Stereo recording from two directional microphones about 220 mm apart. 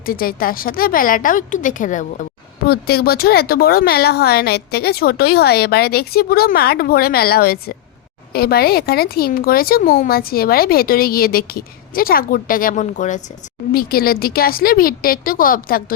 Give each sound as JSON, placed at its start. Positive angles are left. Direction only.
{"t": 0.0, "sound": "a woman's voice", "side_deg": 40}